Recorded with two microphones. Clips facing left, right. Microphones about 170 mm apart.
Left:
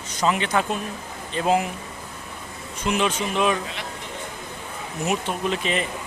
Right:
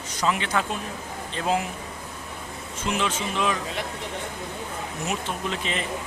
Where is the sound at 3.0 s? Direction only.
15° left (ahead or behind).